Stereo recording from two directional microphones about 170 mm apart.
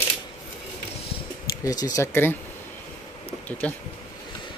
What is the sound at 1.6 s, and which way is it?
Speech, 20° left (ahead or behind).